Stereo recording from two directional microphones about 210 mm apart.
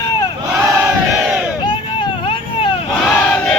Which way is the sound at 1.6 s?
25° left (ahead or behind).